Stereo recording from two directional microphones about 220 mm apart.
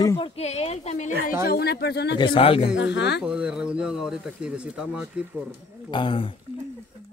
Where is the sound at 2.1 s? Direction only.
25° left (ahead or behind).